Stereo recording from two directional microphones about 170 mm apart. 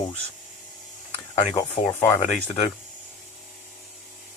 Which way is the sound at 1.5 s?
20° left (ahead or behind).